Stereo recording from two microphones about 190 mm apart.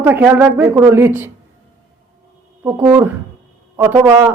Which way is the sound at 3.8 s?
15° right (ahead or behind).